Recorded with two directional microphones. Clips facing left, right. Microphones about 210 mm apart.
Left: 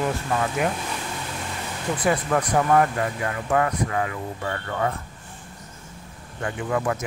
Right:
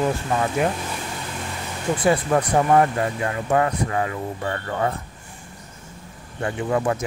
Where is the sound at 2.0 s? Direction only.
30° right (ahead or behind).